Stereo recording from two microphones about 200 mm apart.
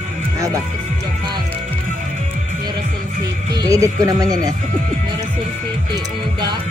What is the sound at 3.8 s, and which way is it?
Speech, 20° right (ahead or behind).